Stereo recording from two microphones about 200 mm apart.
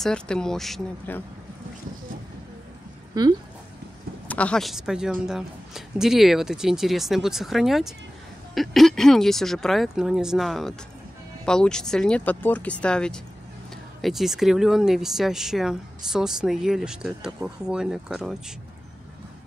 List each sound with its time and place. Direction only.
0.0 s speech: 5° left (ahead or behind)
3.1 s speech: 20° right (ahead or behind)
4.3 s speech: 5° left (ahead or behind)